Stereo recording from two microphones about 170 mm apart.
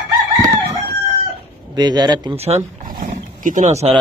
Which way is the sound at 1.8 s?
25° right (ahead or behind).